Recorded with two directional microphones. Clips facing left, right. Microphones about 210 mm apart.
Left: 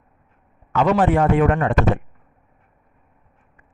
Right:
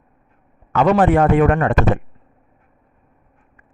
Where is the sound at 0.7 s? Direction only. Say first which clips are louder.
Right 3 dB; 55° right (ahead or behind).